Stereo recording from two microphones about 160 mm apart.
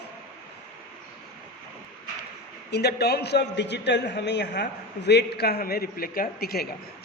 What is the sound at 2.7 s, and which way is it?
A man's voice, 90° left.